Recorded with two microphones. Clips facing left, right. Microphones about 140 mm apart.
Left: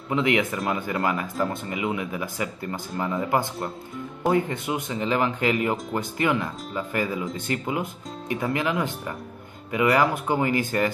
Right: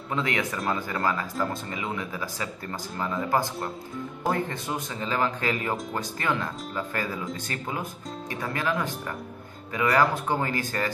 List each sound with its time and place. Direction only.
0.1 s speech: 15° left (ahead or behind)